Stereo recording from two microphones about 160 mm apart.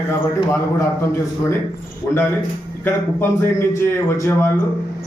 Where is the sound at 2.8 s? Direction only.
15° left (ahead or behind).